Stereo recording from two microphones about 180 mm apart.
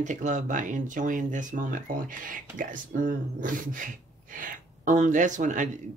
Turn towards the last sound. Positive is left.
turn(degrees=-45)  # may be behind; listen again after turning